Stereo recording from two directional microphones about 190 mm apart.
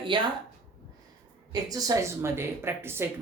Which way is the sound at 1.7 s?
15° right (ahead or behind).